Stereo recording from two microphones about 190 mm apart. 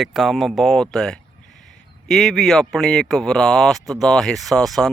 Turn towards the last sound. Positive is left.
turn(degrees=0)  # may be behind; listen again after turning